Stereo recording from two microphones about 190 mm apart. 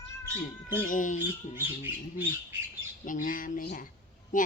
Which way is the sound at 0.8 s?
45° left (ahead or behind).